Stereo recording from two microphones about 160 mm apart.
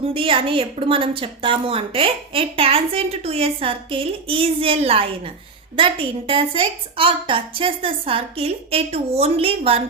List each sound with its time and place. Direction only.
0.1 s a woman's voice: 35° right (ahead or behind)